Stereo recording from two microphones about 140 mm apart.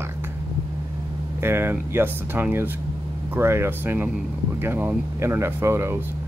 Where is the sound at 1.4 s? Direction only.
15° right (ahead or behind).